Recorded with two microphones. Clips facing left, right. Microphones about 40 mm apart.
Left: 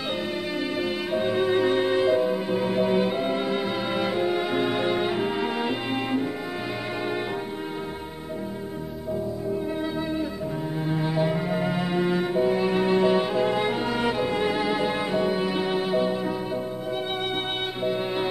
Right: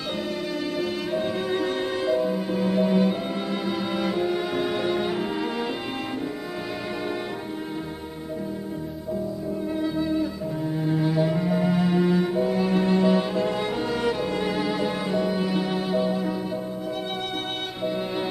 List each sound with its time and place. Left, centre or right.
0.7 s music: centre
9.8 s music: centre
17.8 s music: centre